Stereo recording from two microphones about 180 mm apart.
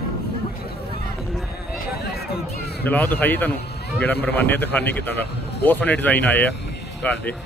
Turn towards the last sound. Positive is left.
turn(degrees=5)  # may be behind; listen again after turning